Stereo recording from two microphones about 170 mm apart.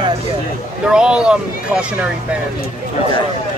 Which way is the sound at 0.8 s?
5° right (ahead or behind).